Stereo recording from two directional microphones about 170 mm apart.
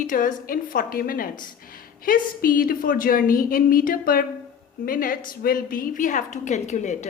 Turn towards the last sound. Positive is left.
turn(degrees=45)  # may be behind; listen again after turning